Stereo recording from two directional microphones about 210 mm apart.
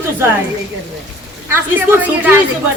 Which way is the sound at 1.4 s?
10° right (ahead or behind).